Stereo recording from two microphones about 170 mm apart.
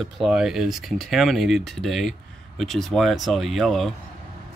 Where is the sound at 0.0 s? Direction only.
5° right (ahead or behind).